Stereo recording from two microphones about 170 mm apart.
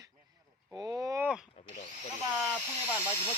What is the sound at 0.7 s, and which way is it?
Speech, 5° left (ahead or behind).